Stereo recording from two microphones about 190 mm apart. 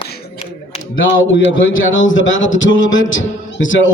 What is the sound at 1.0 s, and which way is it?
A man's voice, 90° left.